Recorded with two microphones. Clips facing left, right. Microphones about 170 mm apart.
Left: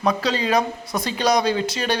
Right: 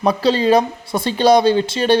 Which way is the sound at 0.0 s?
30° right (ahead or behind).